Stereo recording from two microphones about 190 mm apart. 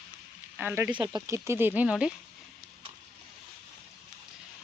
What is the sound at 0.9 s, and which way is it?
Speech, 20° right (ahead or behind).